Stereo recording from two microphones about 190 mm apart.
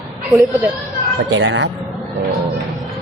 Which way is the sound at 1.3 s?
70° right (ahead or behind).